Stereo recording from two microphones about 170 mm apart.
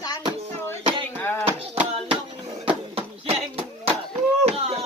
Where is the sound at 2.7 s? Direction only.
35° right (ahead or behind).